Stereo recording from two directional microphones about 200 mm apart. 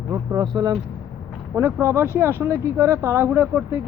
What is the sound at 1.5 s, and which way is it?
Speech, 10° right (ahead or behind).